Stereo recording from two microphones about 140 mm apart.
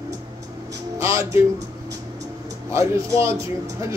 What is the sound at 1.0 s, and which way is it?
Music, 20° right (ahead or behind).